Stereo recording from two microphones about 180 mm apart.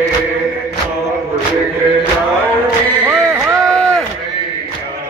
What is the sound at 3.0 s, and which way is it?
Music, 15° right (ahead or behind).